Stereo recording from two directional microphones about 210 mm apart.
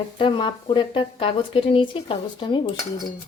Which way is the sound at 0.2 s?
25° left (ahead or behind).